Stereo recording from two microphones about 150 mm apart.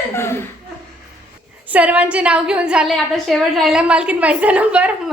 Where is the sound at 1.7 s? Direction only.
10° right (ahead or behind).